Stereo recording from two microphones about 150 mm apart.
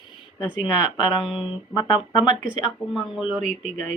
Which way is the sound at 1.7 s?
25° left (ahead or behind).